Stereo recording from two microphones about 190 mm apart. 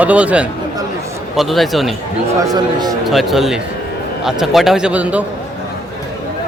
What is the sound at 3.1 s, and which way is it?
A man's voice, centre (ahead or behind).